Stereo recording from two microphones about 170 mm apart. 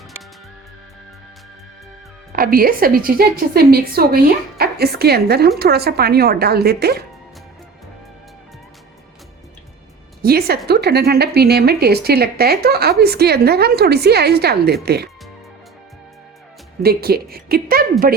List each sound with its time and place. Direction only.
2.3 s a woman's voice: 60° right (ahead or behind)
10.2 s a woman's voice: 65° right (ahead or behind)
16.8 s a woman's voice: 65° right (ahead or behind)